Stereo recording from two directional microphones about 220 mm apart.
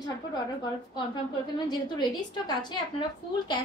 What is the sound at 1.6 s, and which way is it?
A woman's voice, 20° left (ahead or behind).